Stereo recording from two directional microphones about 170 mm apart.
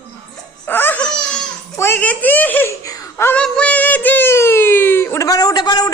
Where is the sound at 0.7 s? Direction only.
10° left (ahead or behind).